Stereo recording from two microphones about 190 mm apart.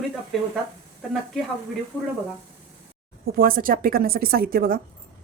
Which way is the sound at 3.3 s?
50° right (ahead or behind).